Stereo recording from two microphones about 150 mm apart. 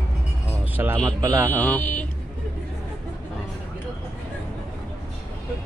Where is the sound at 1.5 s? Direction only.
10° left (ahead or behind).